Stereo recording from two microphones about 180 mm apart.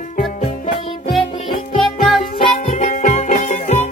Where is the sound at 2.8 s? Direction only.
45° left (ahead or behind).